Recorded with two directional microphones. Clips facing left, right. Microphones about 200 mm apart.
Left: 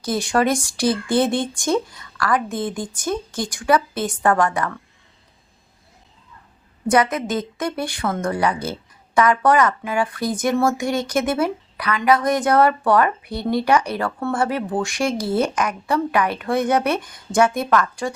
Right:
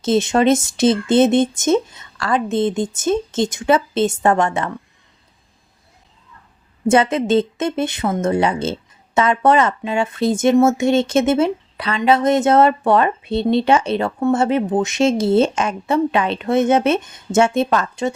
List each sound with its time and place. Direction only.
0.0 s speech: 25° right (ahead or behind)
6.8 s speech: 25° right (ahead or behind)